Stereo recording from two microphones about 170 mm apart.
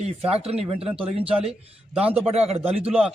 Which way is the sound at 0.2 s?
35° right (ahead or behind).